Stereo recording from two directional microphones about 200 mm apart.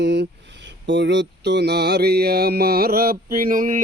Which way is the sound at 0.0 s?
60° right (ahead or behind).